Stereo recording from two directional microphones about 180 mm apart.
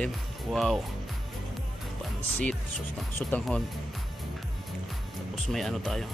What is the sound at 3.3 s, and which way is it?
Speech, centre (ahead or behind).